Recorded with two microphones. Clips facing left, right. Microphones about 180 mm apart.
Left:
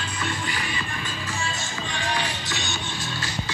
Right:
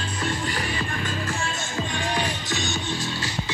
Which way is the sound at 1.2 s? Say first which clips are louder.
Right 2 dB; 50° right (ahead or behind).